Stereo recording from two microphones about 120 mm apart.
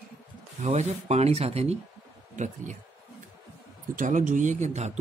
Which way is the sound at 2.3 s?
90° right.